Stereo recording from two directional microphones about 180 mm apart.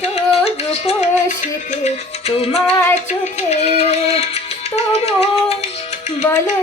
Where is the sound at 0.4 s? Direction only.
35° left (ahead or behind).